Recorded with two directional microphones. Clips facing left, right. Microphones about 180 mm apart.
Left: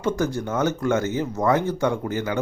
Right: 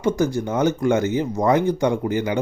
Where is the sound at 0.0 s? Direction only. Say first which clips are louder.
Right 3 dB; 10° right (ahead or behind).